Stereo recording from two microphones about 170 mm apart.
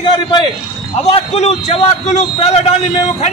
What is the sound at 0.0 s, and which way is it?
Speech, 25° left (ahead or behind).